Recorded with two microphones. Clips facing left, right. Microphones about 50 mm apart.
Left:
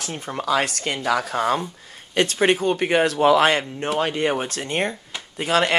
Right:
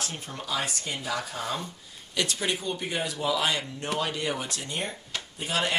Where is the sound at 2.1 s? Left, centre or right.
Left.